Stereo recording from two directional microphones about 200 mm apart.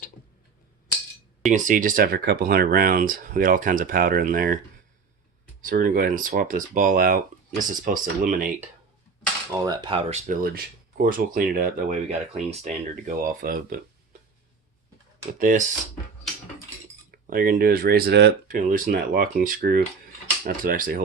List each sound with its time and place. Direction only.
1.5 s speech: 40° right (ahead or behind)
5.6 s speech: 45° right (ahead or behind)
9.6 s speech: 20° right (ahead or behind)
10.1 s speech: 45° right (ahead or behind)
12.0 s speech: 35° right (ahead or behind)
15.4 s speech: 40° right (ahead or behind)
17.1 s speech: 50° right (ahead or behind)
18.4 s speech: 40° right (ahead or behind)